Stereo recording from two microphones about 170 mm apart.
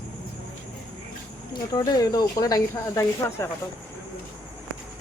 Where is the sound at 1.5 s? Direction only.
25° left (ahead or behind).